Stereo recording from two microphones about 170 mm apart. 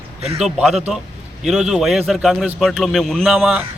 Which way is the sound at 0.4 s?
Centre (ahead or behind).